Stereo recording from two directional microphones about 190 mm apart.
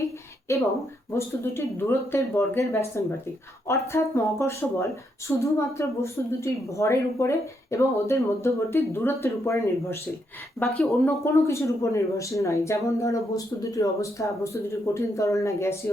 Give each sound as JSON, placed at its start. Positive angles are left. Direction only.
{"t": 1.1, "sound": "speech", "side_deg": 15}